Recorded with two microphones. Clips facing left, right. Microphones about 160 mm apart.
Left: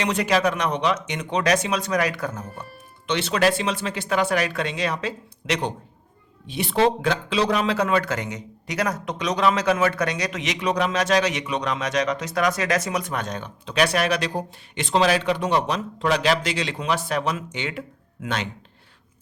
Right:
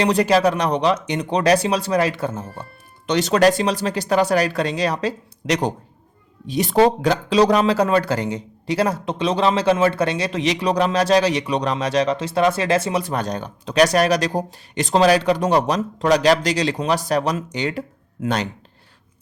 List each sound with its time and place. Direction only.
0.0 s speech: 35° right (ahead or behind)
3.1 s speech: 40° right (ahead or behind)